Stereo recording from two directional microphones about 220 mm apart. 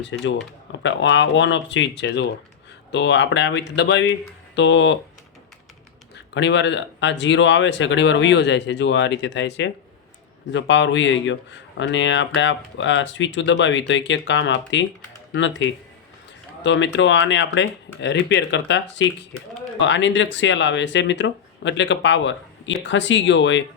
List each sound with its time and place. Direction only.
0.0 s speech: 55° left (ahead or behind)
6.1 s speech: 55° left (ahead or behind)